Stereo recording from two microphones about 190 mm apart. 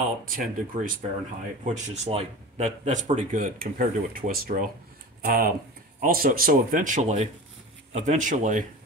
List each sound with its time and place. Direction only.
0.2 s speech: 45° right (ahead or behind)
1.6 s speech: 35° right (ahead or behind)